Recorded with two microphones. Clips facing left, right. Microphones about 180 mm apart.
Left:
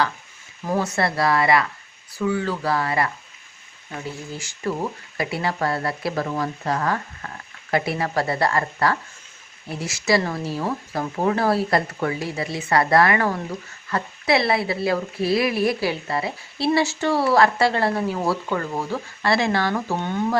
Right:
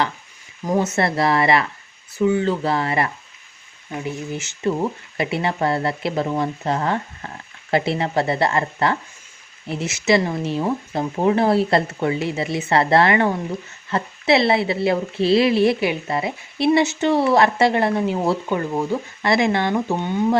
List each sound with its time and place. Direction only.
0.6 s a woman's voice: 20° right (ahead or behind)